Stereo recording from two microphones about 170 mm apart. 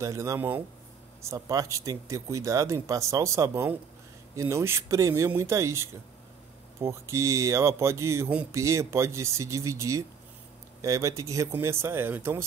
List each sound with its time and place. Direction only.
0.0 s speech: 20° right (ahead or behind)